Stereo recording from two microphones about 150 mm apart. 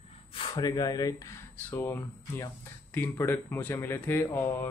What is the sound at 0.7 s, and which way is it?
Speech, 25° left (ahead or behind).